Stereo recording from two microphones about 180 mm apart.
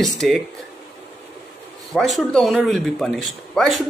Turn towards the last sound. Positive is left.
turn(degrees=0)  # may be behind; listen again after turning